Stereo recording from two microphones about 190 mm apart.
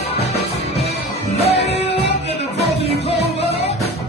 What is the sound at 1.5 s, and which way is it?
Music, 30° left (ahead or behind).